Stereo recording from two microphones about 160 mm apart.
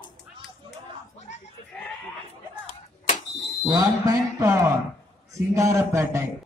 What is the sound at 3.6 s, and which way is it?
Speech, 20° right (ahead or behind).